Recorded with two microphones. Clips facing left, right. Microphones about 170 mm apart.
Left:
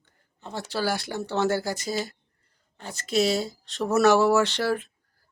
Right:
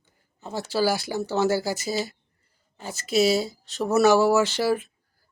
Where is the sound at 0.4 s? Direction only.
5° right (ahead or behind).